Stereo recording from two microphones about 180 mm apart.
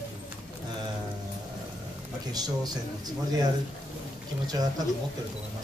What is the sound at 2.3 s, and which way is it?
Speech, 20° right (ahead or behind).